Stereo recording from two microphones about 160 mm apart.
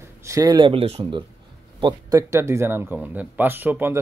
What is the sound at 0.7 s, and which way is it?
Speech, 35° right (ahead or behind).